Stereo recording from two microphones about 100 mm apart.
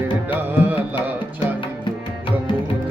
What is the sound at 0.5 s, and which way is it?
Music, 15° right (ahead or behind).